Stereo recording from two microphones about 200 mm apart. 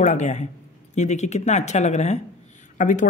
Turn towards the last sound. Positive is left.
turn(degrees=40)  # may be behind; listen again after turning